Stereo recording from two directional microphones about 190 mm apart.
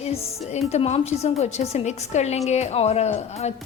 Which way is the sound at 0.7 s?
35° left (ahead or behind).